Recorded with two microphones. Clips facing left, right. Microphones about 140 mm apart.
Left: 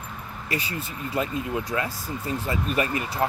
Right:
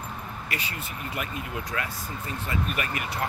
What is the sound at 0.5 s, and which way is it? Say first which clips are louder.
Speech: left 7 dB; 35° left (ahead or behind).